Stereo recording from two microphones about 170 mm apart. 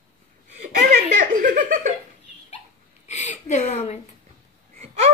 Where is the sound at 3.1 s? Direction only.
45° left (ahead or behind).